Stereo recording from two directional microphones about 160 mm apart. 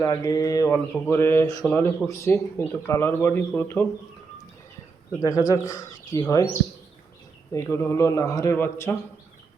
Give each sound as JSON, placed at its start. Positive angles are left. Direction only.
{"t": 0.0, "sound": "a man's voice", "side_deg": 20}
{"t": 5.2, "sound": "speech", "side_deg": 20}
{"t": 7.5, "sound": "a man's voice", "side_deg": 20}